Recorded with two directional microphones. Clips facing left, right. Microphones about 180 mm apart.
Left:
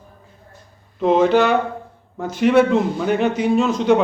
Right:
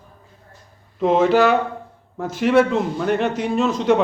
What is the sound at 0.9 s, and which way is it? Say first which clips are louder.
A man's voice: left 1 dB; centre (ahead or behind).